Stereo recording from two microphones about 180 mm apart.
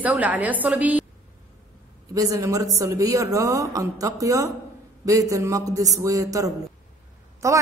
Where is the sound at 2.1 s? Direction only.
20° right (ahead or behind).